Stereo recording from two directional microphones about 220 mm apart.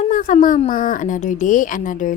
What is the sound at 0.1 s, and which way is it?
A woman's voice, 35° left (ahead or behind).